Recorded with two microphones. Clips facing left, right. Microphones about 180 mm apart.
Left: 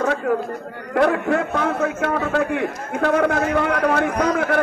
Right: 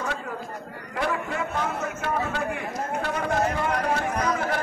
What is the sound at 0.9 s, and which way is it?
A man's voice, 60° left (ahead or behind).